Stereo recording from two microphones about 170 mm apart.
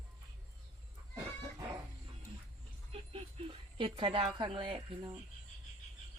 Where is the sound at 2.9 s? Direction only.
35° right (ahead or behind).